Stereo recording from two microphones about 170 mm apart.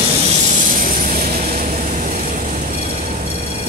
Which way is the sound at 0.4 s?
50° right (ahead or behind).